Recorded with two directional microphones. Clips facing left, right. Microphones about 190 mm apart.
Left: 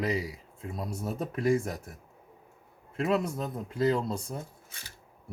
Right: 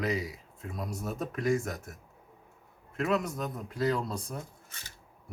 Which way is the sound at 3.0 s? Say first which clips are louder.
Left 2 dB; 30° left (ahead or behind).